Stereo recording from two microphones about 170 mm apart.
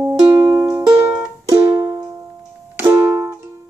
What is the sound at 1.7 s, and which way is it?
Music, 25° right (ahead or behind).